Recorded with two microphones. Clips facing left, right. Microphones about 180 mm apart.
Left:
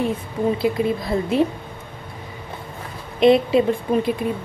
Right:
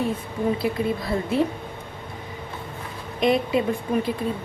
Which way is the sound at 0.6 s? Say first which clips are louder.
Left 4 dB; 20° left (ahead or behind).